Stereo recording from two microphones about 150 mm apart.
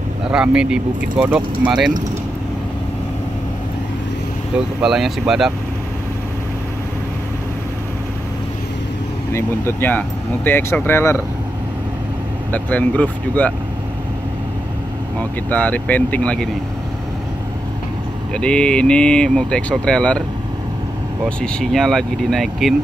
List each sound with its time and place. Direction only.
0.3 s speech: 5° right (ahead or behind)
4.6 s speech: 5° right (ahead or behind)
9.3 s speech: 15° left (ahead or behind)
12.5 s speech: 10° left (ahead or behind)
15.1 s speech: 10° left (ahead or behind)
18.3 s speech: 5° left (ahead or behind)
21.4 s speech: 5° left (ahead or behind)